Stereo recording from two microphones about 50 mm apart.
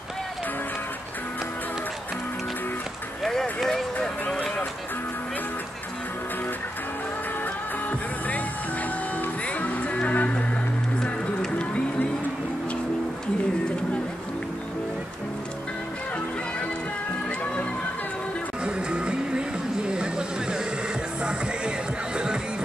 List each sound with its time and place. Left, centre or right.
3.3 s run: centre
9.9 s music: left
11.5 s music: left
18.9 s music: centre
19.9 s vehicle: centre
21.2 s music: centre